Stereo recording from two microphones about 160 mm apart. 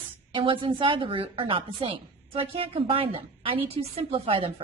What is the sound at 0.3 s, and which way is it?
Speech, 30° right (ahead or behind).